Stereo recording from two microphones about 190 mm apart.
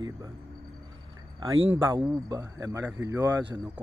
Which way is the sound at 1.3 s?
25° right (ahead or behind).